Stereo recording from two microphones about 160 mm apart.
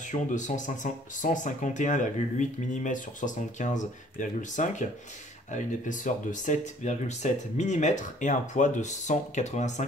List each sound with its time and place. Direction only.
0.1 s speech: 50° left (ahead or behind)